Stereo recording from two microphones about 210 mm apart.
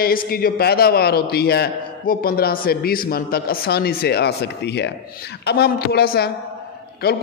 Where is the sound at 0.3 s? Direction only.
45° left (ahead or behind).